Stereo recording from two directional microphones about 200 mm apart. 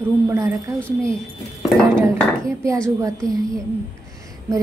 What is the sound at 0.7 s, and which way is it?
Speech, 5° left (ahead or behind).